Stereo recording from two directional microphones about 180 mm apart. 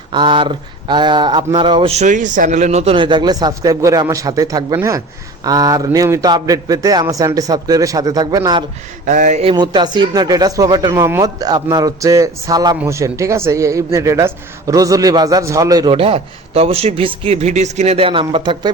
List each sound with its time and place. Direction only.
0.1 s speech: 25° right (ahead or behind)
9.0 s speech: 45° right (ahead or behind)
9.4 s speech: 25° right (ahead or behind)